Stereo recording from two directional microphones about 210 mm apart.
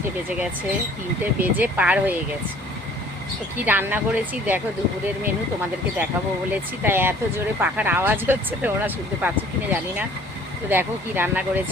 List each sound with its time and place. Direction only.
1.2 s speech: 10° right (ahead or behind)
3.7 s speech: 10° right (ahead or behind)
6.5 s speech: 10° right (ahead or behind)